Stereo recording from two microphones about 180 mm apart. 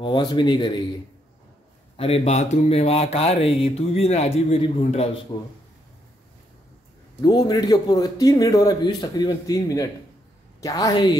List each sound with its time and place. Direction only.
0.0 s a man's voice: 25° left (ahead or behind)
2.0 s speech: 30° left (ahead or behind)
7.2 s a man's voice: 20° left (ahead or behind)